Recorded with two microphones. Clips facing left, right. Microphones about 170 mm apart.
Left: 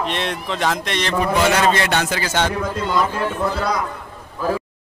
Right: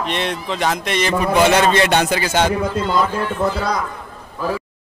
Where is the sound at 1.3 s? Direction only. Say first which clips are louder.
Right 3 dB; 20° right (ahead or behind).